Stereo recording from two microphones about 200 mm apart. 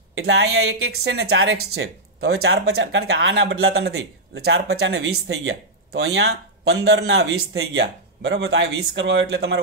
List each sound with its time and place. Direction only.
0.2 s speech: 60° right (ahead or behind); by 1.9 s 85° right
2.4 s speech: 55° right (ahead or behind)
2.7 s speech: 65° right (ahead or behind)
4.4 s speech: 75° right (ahead or behind); by 9.6 s 55° right (ahead or behind)